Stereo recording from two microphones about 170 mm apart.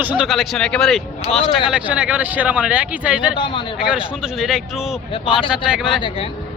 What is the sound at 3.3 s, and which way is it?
Speech, 30° left (ahead or behind).